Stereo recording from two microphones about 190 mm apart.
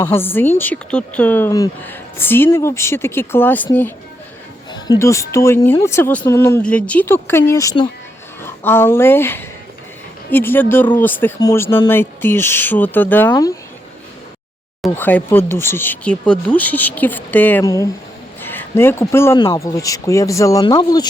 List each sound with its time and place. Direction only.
0.0 s speech: 10° left (ahead or behind)
14.8 s speech: 10° left (ahead or behind)